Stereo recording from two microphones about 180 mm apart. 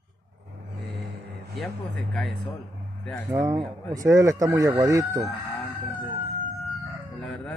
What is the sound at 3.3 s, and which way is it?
Speech, 15° right (ahead or behind).